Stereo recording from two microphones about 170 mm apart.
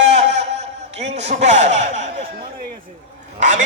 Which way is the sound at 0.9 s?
40° right (ahead or behind).